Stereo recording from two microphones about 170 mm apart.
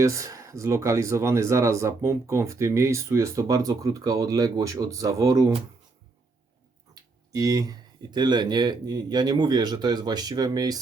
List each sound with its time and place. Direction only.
0.0 s speech: 20° right (ahead or behind)
6.9 s speech: 20° right (ahead or behind)